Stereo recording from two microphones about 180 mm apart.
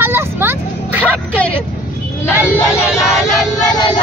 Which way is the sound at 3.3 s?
20° left (ahead or behind).